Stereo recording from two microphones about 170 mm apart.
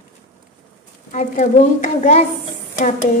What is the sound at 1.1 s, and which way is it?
Speech, 50° left (ahead or behind).